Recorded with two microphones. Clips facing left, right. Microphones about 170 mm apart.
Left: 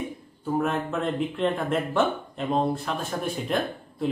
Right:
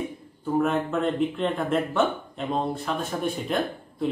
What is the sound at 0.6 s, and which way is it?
Speech, centre (ahead or behind).